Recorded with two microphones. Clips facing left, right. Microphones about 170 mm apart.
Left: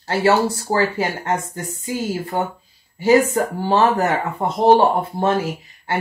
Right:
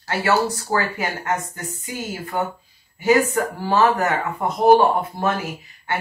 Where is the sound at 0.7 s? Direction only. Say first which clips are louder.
Left 4 dB; 30° left (ahead or behind).